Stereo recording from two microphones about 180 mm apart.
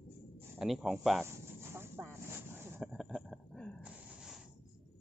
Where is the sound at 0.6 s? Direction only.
Centre (ahead or behind).